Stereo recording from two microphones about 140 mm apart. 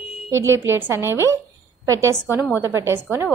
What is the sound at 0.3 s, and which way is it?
A woman's voice, 15° right (ahead or behind).